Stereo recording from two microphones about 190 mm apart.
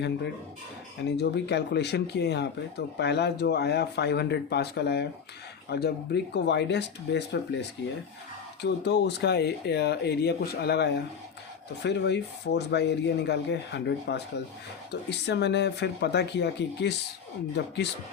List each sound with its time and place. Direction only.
1.0 s speech: 60° left (ahead or behind)
8.6 s speech: 65° left (ahead or behind)